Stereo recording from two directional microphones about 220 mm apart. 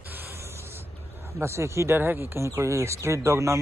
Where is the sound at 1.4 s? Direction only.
10° right (ahead or behind).